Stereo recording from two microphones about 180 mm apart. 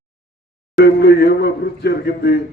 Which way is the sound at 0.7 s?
65° left (ahead or behind).